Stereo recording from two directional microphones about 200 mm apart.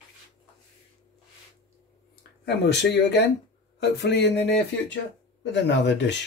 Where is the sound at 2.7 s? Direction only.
55° left (ahead or behind).